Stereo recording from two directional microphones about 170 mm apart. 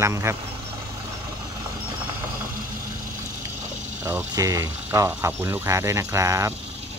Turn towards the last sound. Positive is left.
turn(degrees=-15)  # may be behind; listen again after turning